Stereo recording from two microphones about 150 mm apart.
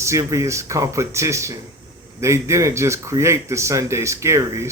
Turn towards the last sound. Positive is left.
turn(degrees=-20)  # may be behind; listen again after turning